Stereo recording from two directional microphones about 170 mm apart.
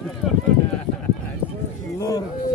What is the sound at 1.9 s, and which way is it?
Speech, 20° left (ahead or behind).